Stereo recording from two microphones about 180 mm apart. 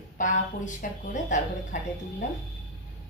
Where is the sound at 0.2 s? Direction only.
45° left (ahead or behind).